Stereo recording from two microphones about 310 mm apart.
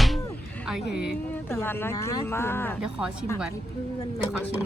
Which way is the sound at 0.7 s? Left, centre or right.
Centre.